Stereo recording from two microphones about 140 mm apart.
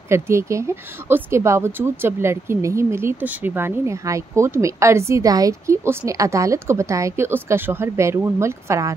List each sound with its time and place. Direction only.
0.1 s speech: 20° right (ahead or behind)